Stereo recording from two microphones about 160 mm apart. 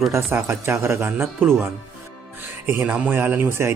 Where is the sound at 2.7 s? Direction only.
10° right (ahead or behind).